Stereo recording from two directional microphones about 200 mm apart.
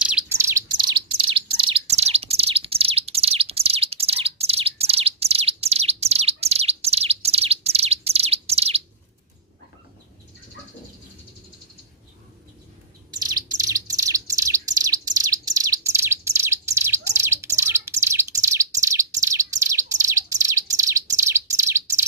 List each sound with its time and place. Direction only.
0.0 s bird: 5° right (ahead or behind)
0.7 s bird: 25° right (ahead or behind)
13.1 s bird: 20° right (ahead or behind)